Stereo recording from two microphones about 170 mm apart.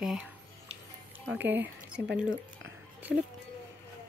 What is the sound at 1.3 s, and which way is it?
Speech, 10° right (ahead or behind).